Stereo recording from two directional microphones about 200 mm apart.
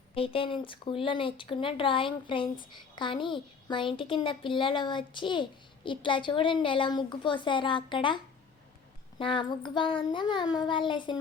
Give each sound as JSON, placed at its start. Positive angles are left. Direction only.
{"t": 0.1, "sound": "speech", "side_deg": 25}